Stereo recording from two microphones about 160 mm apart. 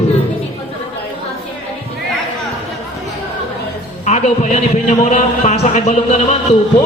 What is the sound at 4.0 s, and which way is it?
A man's voice, 50° left (ahead or behind).